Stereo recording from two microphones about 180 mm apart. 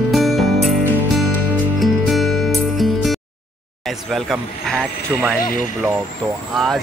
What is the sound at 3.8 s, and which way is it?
Speech, centre (ahead or behind).